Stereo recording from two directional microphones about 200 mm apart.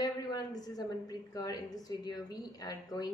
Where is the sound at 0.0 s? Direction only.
20° left (ahead or behind).